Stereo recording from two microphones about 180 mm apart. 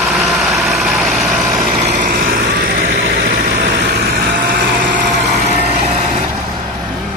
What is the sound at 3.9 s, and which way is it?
Vehicle, 60° right (ahead or behind).